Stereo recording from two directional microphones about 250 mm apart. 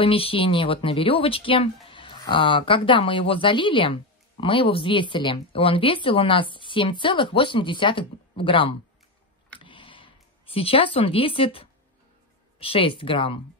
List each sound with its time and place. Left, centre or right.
0.0 s speech: left
9.7 s a sound: centre
12.5 s speech: left